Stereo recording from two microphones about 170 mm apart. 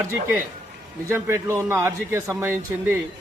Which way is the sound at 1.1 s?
15° right (ahead or behind).